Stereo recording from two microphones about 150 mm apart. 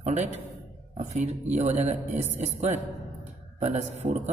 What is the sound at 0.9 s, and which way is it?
A man's voice, 50° right (ahead or behind).